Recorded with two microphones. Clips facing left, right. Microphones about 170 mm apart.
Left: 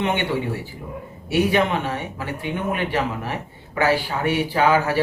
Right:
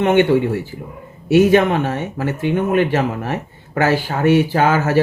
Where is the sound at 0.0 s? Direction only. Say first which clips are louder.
Right 9 dB; 45° right (ahead or behind).